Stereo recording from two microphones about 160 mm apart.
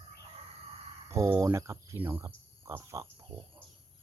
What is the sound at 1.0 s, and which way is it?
Speech, 15° right (ahead or behind).